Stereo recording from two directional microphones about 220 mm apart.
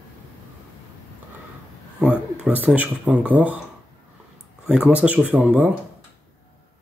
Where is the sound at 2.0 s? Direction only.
5° right (ahead or behind).